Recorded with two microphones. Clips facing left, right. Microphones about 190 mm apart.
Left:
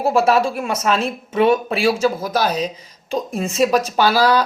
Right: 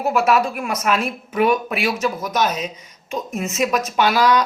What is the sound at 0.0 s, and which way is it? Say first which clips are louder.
Speech: left 2 dB; 30° left (ahead or behind).